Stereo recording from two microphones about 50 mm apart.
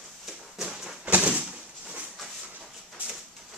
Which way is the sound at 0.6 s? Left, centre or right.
Centre.